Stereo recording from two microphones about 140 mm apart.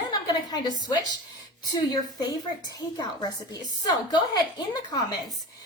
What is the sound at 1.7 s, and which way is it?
A woman's voice, 30° left (ahead or behind).